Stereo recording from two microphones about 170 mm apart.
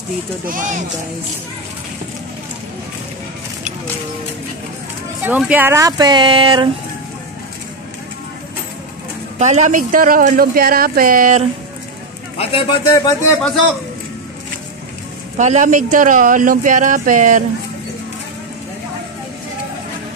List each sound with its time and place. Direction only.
0.5 s speech: 50° right (ahead or behind)
5.2 s speech: 10° right (ahead or behind); by 6.7 s 30° right (ahead or behind)
9.4 s speech: 45° right (ahead or behind)
12.4 s speech: 30° left (ahead or behind)
15.3 s speech: 45° right (ahead or behind)